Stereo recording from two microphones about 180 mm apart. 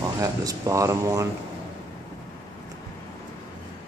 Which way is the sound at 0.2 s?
20° right (ahead or behind).